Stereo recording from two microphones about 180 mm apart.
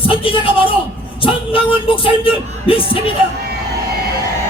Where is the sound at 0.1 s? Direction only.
30° left (ahead or behind).